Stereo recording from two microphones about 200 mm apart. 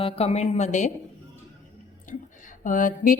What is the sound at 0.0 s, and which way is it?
Speech, 30° left (ahead or behind).